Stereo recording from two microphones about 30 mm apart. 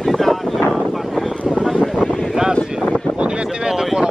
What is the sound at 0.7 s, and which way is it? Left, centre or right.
Wind noise, centre.